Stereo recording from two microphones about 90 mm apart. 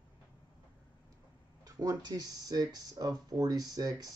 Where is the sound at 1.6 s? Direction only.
45° right (ahead or behind).